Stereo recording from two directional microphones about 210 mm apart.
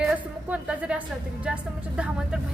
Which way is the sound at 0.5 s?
5° right (ahead or behind).